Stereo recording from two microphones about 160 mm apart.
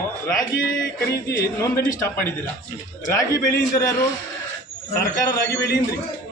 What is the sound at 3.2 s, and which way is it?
Speech, 20° left (ahead or behind).